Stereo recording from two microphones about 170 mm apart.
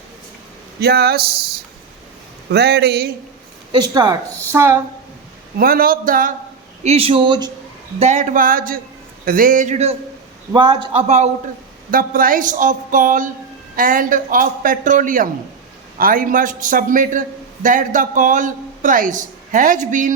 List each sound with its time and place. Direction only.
0.8 s speech: 70° right (ahead or behind)
3.7 s speech: 25° right (ahead or behind)
5.5 s speech: 60° right (ahead or behind)
6.8 s speech: 35° right (ahead or behind)
7.9 s a man's voice: 45° right (ahead or behind)
10.5 s speech: 25° right (ahead or behind)
11.9 s a man's voice: 55° right (ahead or behind)